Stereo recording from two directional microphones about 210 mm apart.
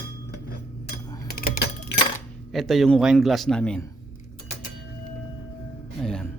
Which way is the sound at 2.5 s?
Centre (ahead or behind).